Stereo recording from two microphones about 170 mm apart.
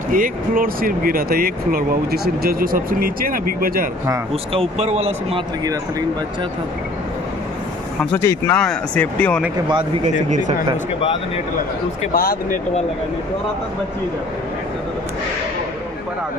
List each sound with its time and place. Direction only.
0.1 s speech: 55° right (ahead or behind)
4.6 s speech: 40° right (ahead or behind)
8.2 s speech: 15° left (ahead or behind)
12.1 s speech: 60° left (ahead or behind)